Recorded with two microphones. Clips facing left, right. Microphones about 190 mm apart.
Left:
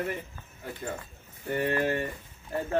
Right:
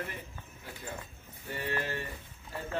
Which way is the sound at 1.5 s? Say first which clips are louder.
Left 8 dB; 55° left (ahead or behind).